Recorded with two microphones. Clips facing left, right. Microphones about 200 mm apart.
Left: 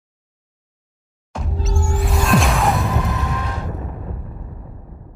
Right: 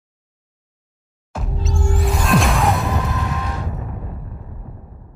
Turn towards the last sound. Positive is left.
turn(degrees=0)  # may be behind; listen again after turning